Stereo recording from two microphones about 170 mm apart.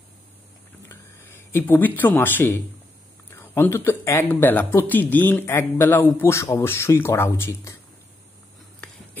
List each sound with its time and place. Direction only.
0.8 s speech: 15° left (ahead or behind)